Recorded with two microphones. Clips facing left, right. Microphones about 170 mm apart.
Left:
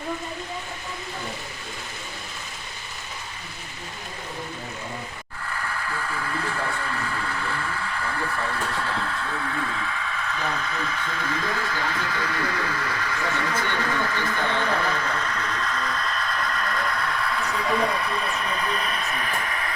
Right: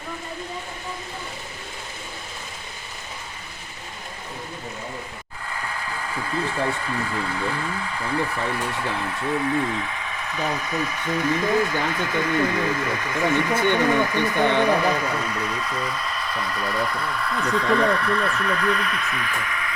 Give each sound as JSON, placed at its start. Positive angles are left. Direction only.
{"t": 6.7, "sound": "speech", "side_deg": -20}
{"t": 8.8, "sound": "speech", "side_deg": -15}